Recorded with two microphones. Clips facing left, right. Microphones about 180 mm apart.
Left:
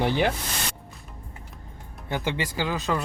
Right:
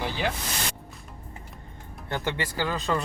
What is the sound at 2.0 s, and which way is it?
Speech, 15° left (ahead or behind).